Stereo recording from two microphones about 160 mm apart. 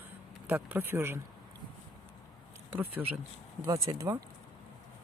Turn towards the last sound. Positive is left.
turn(degrees=-20)  # may be behind; listen again after turning